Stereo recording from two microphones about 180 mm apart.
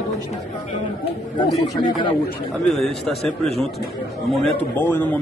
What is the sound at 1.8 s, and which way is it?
Speech, 25° left (ahead or behind).